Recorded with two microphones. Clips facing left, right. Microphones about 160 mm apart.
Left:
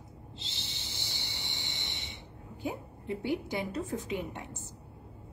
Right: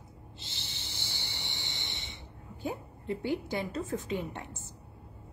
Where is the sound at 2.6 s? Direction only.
15° left (ahead or behind).